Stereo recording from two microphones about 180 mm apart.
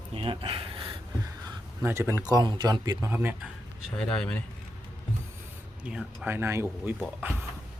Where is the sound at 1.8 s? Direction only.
15° right (ahead or behind).